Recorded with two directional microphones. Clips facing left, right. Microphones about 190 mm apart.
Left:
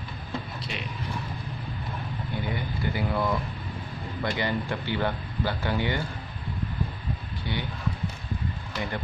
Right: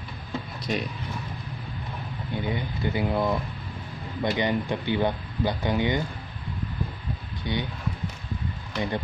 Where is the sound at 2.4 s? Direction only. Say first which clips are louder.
Right 3 dB; 20° right (ahead or behind).